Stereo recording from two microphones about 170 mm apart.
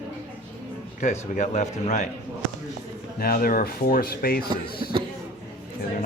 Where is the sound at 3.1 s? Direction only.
60° left (ahead or behind).